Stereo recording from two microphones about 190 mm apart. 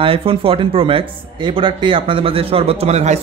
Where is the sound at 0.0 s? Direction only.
30° right (ahead or behind).